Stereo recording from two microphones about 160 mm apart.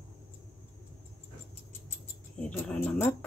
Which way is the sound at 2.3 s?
5° left (ahead or behind).